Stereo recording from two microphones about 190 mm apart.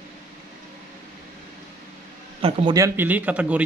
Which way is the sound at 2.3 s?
30° right (ahead or behind).